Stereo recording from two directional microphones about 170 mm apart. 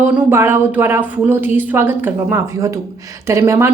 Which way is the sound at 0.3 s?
15° right (ahead or behind).